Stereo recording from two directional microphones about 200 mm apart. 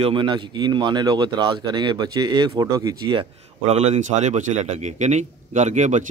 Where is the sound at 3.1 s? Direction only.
30° right (ahead or behind).